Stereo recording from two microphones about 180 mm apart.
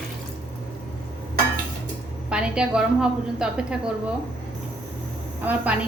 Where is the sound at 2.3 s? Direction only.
5° right (ahead or behind).